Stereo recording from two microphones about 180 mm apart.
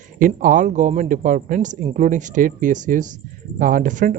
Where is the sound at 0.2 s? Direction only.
50° right (ahead or behind).